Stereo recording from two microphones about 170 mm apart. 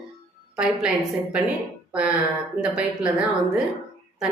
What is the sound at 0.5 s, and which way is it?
Speech, 5° right (ahead or behind).